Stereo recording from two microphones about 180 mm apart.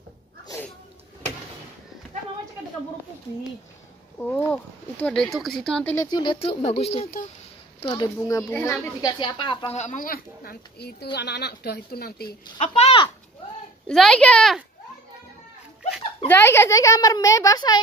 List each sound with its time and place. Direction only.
4.2 s speech: 10° left (ahead or behind)
5.9 s speech: 25° left (ahead or behind)
7.8 s a woman's voice: 25° left (ahead or behind)
9.0 s speech: 25° left (ahead or behind)
9.8 s speech: 45° left (ahead or behind); by 12.4 s 60° left (ahead or behind)
12.5 s speech: 35° left (ahead or behind)
13.8 s speech: 5° left (ahead or behind)
16.3 s a woman's voice: 15° left (ahead or behind)